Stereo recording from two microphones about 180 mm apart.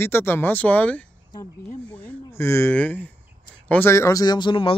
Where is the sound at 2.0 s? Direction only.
15° left (ahead or behind).